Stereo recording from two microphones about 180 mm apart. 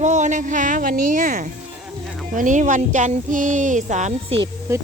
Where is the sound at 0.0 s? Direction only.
40° right (ahead or behind).